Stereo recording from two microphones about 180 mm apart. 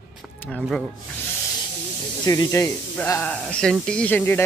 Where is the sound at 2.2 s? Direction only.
20° left (ahead or behind).